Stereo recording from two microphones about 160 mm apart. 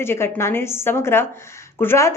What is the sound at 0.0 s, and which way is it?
A woman's voice, 15° left (ahead or behind).